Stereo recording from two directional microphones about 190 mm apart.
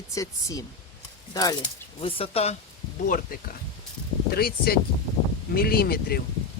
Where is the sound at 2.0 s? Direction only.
30° left (ahead or behind).